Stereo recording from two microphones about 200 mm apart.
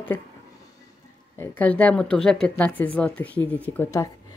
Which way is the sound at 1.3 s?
10° left (ahead or behind).